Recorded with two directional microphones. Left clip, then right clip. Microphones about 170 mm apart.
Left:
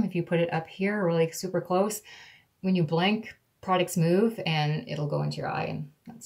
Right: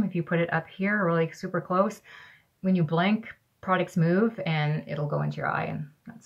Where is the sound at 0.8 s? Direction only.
45° right (ahead or behind).